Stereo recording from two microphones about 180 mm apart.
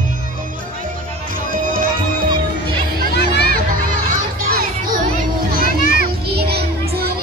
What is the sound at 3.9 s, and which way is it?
Children playing, 55° right (ahead or behind).